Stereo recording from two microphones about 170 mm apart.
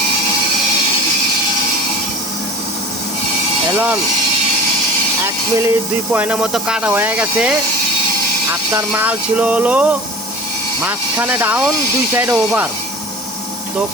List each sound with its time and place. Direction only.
3.7 s speech: 15° right (ahead or behind)
5.2 s speech: 15° right (ahead or behind)
8.7 s speech: 10° right (ahead or behind)